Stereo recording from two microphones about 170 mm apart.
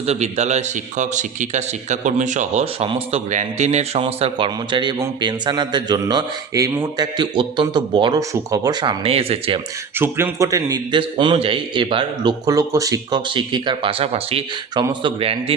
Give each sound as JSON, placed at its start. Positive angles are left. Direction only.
{"t": 0.0, "sound": "a man's voice", "side_deg": -40}
{"t": 2.8, "sound": "a man's voice", "side_deg": -25}
{"t": 3.2, "sound": "a man's voice", "side_deg": -45}
{"t": 10.0, "sound": "a man's voice", "side_deg": -15}